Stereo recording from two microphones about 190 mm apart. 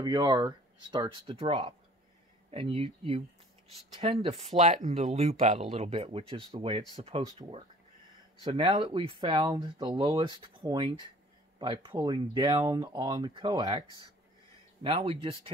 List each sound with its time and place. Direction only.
0.0 s speech: 20° right (ahead or behind)
8.5 s speech: 25° right (ahead or behind)